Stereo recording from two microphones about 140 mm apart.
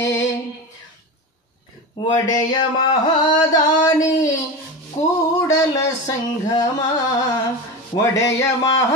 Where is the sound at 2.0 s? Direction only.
30° left (ahead or behind).